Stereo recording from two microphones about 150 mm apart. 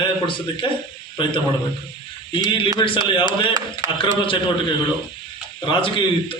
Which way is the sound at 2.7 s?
35° left (ahead or behind).